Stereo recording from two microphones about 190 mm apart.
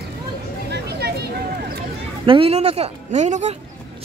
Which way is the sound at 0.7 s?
60° right (ahead or behind).